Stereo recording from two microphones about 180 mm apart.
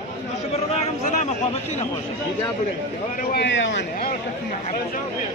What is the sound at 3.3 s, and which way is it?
Speech, 80° left.